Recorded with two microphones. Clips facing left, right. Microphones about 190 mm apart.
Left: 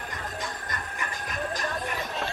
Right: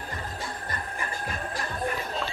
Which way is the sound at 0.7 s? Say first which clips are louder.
Right 1 dB; 30° right (ahead or behind).